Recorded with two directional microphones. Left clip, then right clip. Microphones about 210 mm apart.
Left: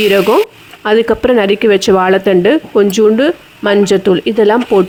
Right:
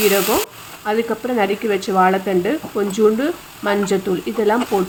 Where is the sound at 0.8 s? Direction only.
45° left (ahead or behind).